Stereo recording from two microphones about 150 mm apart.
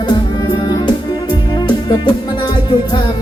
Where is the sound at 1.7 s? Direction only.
30° left (ahead or behind).